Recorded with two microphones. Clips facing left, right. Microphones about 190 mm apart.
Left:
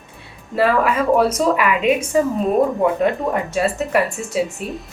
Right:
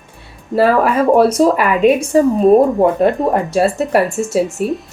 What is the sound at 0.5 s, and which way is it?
A woman's voice, 35° right (ahead or behind).